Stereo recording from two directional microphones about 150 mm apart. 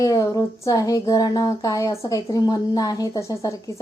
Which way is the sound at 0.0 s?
20° left (ahead or behind).